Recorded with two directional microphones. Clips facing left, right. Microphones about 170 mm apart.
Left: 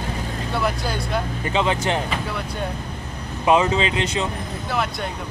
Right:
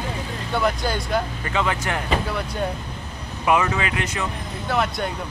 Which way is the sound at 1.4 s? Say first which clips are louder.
Left 3 dB; 20° left (ahead or behind).